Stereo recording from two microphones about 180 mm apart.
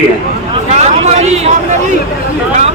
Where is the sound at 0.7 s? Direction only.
40° right (ahead or behind).